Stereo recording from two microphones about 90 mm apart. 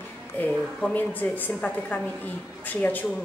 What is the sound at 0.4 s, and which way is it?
A woman's voice, 20° left (ahead or behind).